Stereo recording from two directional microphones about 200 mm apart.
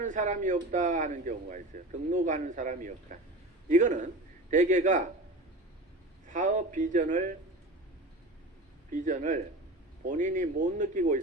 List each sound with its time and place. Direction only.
0.0 s speech: 40° right (ahead or behind)
6.2 s speech: 40° right (ahead or behind)
8.9 s speech: 40° right (ahead or behind)